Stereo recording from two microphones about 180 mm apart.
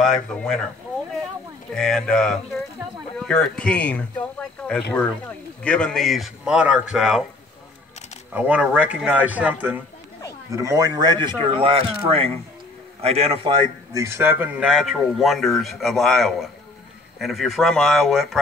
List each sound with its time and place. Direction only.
0.0 s speech: 5° left (ahead or behind)
1.8 s speech: 5° left (ahead or behind)
8.3 s a man's voice: 10° right (ahead or behind); by 13.6 s 30° right (ahead or behind)
13.9 s speech: 15° right (ahead or behind)